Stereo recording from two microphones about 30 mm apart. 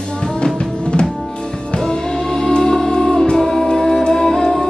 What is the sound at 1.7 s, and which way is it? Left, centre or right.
Music, left.